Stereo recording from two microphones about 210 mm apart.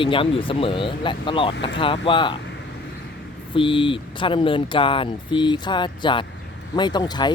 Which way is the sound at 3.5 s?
25° left (ahead or behind).